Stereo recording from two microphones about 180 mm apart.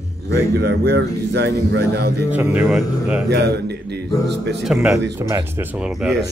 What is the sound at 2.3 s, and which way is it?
Speech, 10° right (ahead or behind).